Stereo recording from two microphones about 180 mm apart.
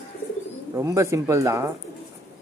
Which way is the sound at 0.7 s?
15° right (ahead or behind).